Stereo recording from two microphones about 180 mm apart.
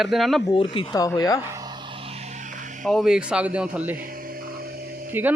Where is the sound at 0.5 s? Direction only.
30° left (ahead or behind).